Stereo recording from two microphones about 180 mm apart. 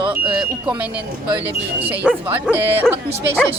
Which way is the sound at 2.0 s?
10° right (ahead or behind).